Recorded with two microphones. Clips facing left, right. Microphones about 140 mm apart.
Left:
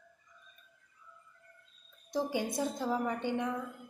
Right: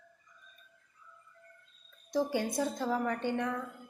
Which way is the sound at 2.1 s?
15° left (ahead or behind).